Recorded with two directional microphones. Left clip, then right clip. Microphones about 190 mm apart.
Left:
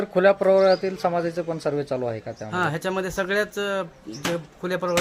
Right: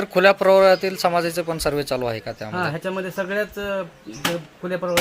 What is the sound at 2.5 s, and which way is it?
Speech, 25° left (ahead or behind).